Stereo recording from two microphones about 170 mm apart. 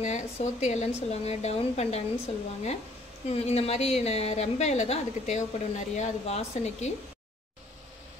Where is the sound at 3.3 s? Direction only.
40° left (ahead or behind).